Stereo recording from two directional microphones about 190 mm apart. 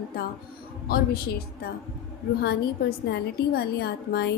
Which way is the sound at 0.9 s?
55° left (ahead or behind).